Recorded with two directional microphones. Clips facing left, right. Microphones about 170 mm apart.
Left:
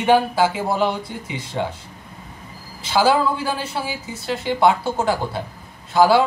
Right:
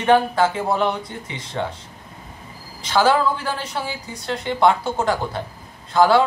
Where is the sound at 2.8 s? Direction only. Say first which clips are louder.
Even; 10° left (ahead or behind).